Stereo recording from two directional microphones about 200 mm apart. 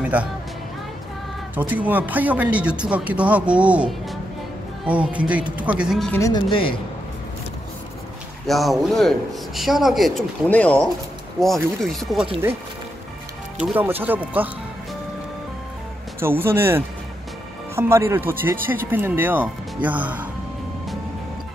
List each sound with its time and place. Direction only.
0.0 s music: 5° right (ahead or behind)
1.5 s speech: 5° right (ahead or behind)
6.2 s speech: 25° left (ahead or behind)
8.5 s speech: centre (ahead or behind)
13.6 s speech: 5° right (ahead or behind)
16.2 s speech: 10° right (ahead or behind)